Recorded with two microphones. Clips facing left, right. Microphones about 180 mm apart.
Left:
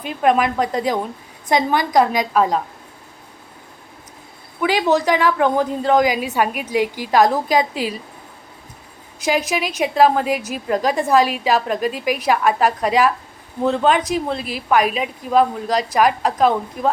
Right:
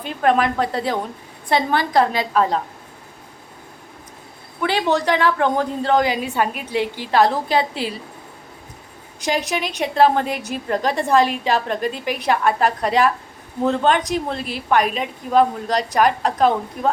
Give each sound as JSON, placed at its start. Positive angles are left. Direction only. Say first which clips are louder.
{"t": 0.0, "sound": "a woman's voice", "louder": "left 1 dB", "side_deg": 10}
{"t": 4.6, "sound": "a woman's voice", "louder": "left 2 dB", "side_deg": 10}
{"t": 9.2, "sound": "speech", "louder": "left 2 dB", "side_deg": -35}
{"t": 9.8, "sound": "a woman's voice", "louder": "left 1 dB", "side_deg": 10}
{"t": 14.1, "sound": "speech", "louder": "left 2 dB", "side_deg": -40}
{"t": 14.7, "sound": "a woman's voice", "louder": "left 1 dB", "side_deg": 10}